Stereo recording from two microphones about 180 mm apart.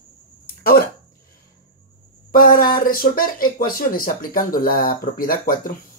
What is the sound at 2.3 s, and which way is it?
Speech, 55° left (ahead or behind).